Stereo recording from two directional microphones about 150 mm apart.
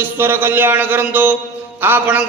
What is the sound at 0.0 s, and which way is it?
A man's voice, 15° right (ahead or behind).